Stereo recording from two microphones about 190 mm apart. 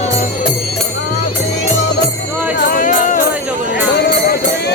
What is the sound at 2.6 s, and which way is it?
Music, 45° left (ahead or behind).